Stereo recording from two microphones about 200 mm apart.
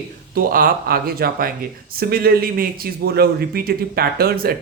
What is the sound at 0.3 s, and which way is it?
Speech, 45° right (ahead or behind).